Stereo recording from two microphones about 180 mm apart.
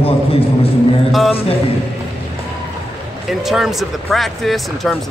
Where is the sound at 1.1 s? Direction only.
Centre (ahead or behind).